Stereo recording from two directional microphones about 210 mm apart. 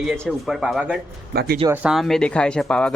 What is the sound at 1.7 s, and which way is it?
Speech, 5° right (ahead or behind).